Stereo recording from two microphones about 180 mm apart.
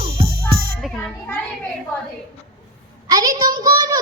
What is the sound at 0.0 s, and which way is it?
Music, 30° right (ahead or behind).